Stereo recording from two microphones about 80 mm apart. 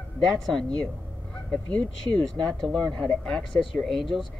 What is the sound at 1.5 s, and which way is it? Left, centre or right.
Speech, centre.